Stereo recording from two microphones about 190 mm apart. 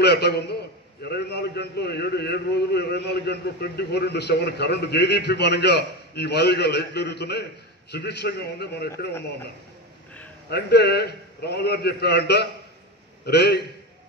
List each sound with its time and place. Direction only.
0.0 s a man's voice: 60° left (ahead or behind)
10.5 s a man's voice: 60° left (ahead or behind)